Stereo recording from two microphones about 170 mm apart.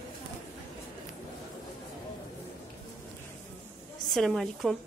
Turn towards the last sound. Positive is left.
turn(degrees=0)  # may be behind; listen again after turning